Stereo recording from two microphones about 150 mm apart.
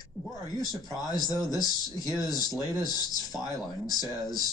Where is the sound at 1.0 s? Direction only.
25° left (ahead or behind).